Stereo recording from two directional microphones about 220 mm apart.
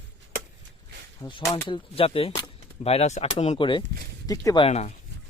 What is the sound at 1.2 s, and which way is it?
Speech, 20° left (ahead or behind).